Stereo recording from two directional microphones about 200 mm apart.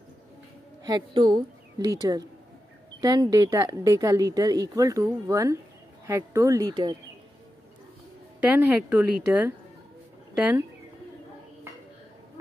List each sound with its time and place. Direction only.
0.8 s a woman's voice: 20° right (ahead or behind)
8.4 s a woman's voice: 5° right (ahead or behind)